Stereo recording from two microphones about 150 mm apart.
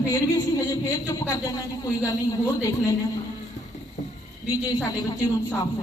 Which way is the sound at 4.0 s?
55° left (ahead or behind).